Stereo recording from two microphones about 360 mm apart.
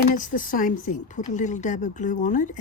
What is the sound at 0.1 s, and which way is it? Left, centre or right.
Speech, left.